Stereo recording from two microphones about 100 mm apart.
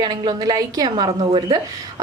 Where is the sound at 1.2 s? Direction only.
55° right (ahead or behind).